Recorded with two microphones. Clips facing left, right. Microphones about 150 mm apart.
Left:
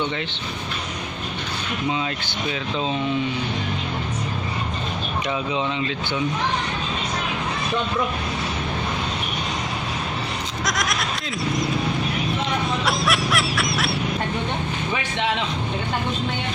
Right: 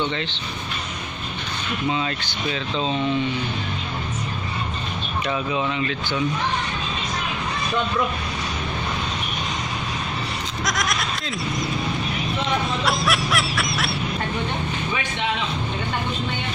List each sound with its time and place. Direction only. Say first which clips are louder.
5.5 s speech: even; 20° left (ahead or behind)
10.6 s a sound: even; centre (ahead or behind)
12.8 s snicker: even; centre (ahead or behind)